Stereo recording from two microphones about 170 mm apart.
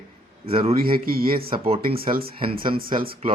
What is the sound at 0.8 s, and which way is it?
Speech, 60° right (ahead or behind).